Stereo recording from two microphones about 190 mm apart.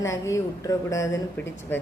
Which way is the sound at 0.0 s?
15° left (ahead or behind).